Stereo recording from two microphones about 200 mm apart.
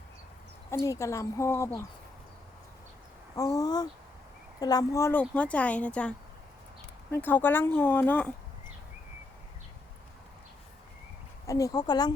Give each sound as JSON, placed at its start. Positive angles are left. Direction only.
{"t": 0.7, "sound": "speech", "side_deg": 15}
{"t": 3.3, "sound": "speech", "side_deg": 15}
{"t": 11.4, "sound": "speech", "side_deg": 15}